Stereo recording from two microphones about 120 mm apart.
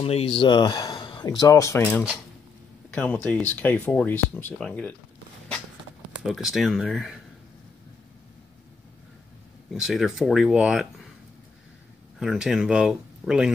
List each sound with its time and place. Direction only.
0.0 s speech: 50° left (ahead or behind); by 4.9 s 10° left (ahead or behind)
6.1 s speech: centre (ahead or behind)
9.7 s speech: centre (ahead or behind)
12.2 s speech: 5° right (ahead or behind)